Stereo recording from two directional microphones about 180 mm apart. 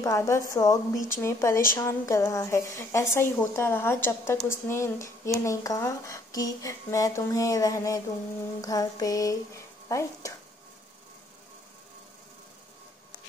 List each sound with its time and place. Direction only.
0.0 s speech: 15° left (ahead or behind)